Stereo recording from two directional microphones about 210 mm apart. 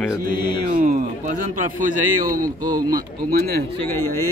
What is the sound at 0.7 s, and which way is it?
Speech, 40° right (ahead or behind).